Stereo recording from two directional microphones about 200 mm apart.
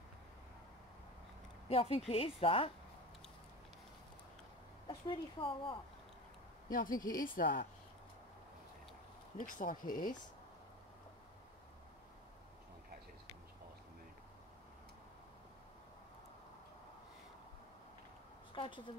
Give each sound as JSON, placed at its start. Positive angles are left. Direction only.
{"t": 1.7, "sound": "speech", "side_deg": 30}
{"t": 4.8, "sound": "speech", "side_deg": 25}
{"t": 6.9, "sound": "speech", "side_deg": 20}
{"t": 7.2, "sound": "speech", "side_deg": 45}
{"t": 9.4, "sound": "speech", "side_deg": 40}
{"t": 18.5, "sound": "speech", "side_deg": 25}